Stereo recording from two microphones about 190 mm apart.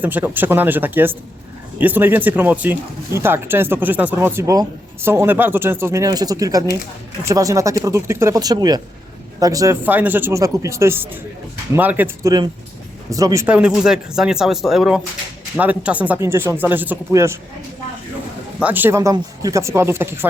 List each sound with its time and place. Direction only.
0.0 s speech: 10° right (ahead or behind)
18.6 s speech: 10° right (ahead or behind)